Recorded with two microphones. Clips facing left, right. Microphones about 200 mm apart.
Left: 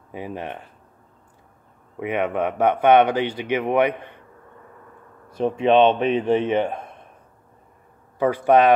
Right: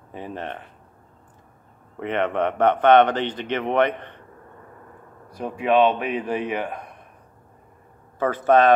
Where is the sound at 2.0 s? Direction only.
10° left (ahead or behind).